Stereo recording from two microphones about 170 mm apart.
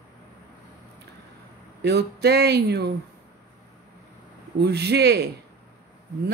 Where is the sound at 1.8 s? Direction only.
75° right (ahead or behind).